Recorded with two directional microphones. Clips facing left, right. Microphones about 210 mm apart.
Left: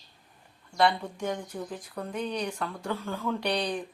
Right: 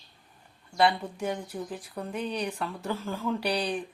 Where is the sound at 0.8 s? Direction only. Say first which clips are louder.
Even; 5° right (ahead or behind).